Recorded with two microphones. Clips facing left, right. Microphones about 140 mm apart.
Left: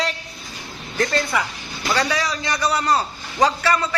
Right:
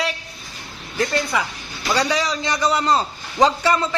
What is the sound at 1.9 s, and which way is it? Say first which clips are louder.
A man's voice: right 2 dB; 15° right (ahead or behind).